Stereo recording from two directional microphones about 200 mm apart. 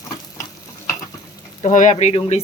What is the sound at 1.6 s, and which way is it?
Speech, 35° left (ahead or behind).